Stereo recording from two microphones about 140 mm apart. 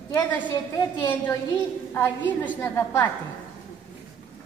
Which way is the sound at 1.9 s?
15° left (ahead or behind).